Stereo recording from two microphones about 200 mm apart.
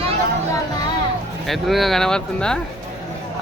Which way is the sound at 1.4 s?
Centre (ahead or behind).